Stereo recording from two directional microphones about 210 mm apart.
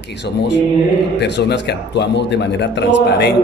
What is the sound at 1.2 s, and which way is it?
A man's voice, 55° left (ahead or behind).